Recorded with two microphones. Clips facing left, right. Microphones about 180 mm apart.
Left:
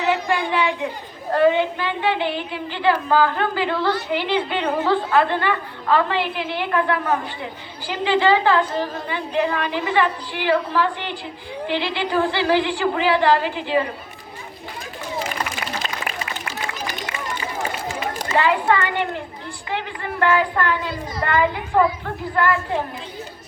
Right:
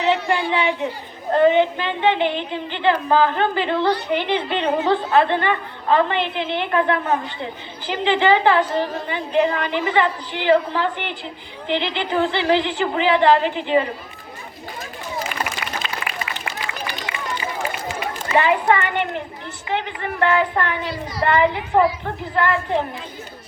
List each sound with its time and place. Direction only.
0.0 s child singing: 20° right (ahead or behind)
1.3 s a woman's voice: 20° right (ahead or behind)
18.3 s a woman's voice: 20° right (ahead or behind)